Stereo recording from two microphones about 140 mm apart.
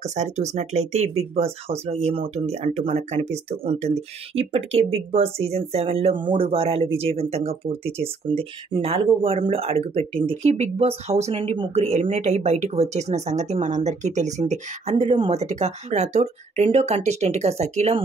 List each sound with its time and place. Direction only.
0.0 s speech: 55° right (ahead or behind)